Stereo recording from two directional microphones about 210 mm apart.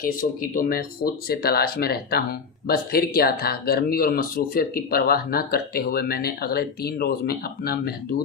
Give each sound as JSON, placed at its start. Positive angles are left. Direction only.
{"t": 0.0, "sound": "speech", "side_deg": 40}